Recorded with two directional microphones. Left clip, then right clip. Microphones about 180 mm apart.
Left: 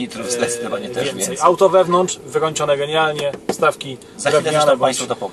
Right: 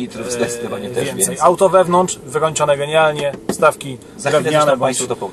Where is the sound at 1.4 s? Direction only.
15° right (ahead or behind).